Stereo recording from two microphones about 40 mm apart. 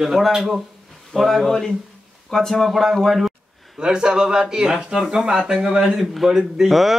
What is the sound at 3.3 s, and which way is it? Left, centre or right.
Speech, right.